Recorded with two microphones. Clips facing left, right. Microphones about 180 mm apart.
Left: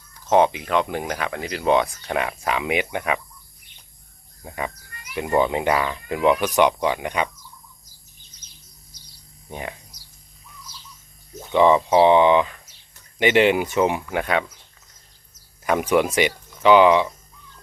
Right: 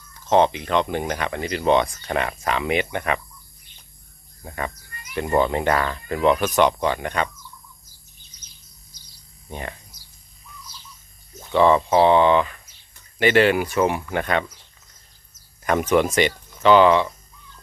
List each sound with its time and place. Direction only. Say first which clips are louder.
0.3 s speech: even; 10° left (ahead or behind)
4.4 s speech: even; 10° left (ahead or behind)
9.5 s speech: left 1 dB; 10° left (ahead or behind)
11.5 s speech: left 1 dB; 15° left (ahead or behind)
15.6 s speech: even; 10° left (ahead or behind)